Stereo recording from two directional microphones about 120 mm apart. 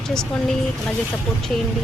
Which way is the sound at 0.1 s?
5° left (ahead or behind).